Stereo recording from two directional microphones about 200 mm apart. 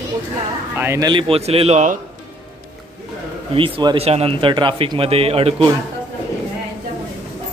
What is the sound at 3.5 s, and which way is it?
Speech, 25° right (ahead or behind).